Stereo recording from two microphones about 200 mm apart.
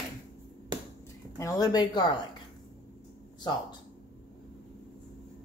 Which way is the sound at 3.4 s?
20° left (ahead or behind).